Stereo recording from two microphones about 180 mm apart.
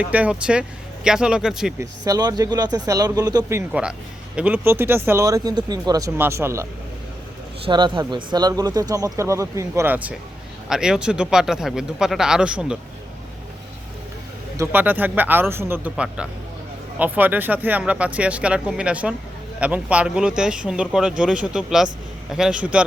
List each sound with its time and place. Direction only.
0.0 s speech: 10° right (ahead or behind)
1.8 s speech: 20° right (ahead or behind)
3.7 s speech: 5° right (ahead or behind)
7.6 s speech: 25° right (ahead or behind); by 12.7 s 5° right (ahead or behind)
14.6 s speech: 10° right (ahead or behind)